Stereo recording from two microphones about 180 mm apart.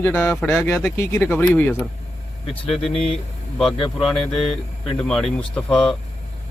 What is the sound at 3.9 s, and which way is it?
Speech, centre (ahead or behind).